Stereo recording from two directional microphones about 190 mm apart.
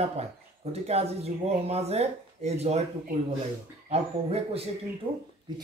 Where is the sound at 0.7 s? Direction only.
35° right (ahead or behind).